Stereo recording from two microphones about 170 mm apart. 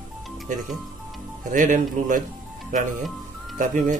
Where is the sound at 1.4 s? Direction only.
50° right (ahead or behind).